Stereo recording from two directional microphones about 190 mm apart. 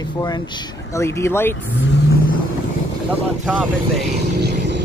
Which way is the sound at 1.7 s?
70° left (ahead or behind).